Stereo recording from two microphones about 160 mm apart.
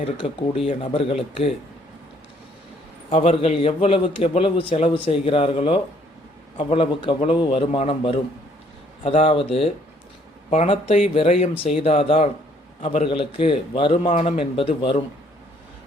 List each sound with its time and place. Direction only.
0.0 s a man's voice: 35° left (ahead or behind)
3.1 s a man's voice: 35° left (ahead or behind)